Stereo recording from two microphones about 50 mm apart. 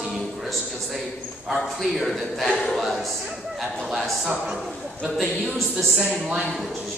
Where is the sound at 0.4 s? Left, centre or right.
Centre.